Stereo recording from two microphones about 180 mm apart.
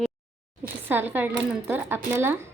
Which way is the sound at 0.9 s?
10° right (ahead or behind).